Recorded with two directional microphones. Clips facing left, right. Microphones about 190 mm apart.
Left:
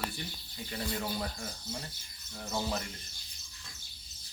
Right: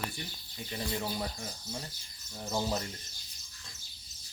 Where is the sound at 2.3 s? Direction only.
20° right (ahead or behind).